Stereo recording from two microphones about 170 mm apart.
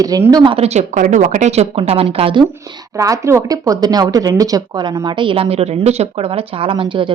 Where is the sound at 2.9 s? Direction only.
20° right (ahead or behind).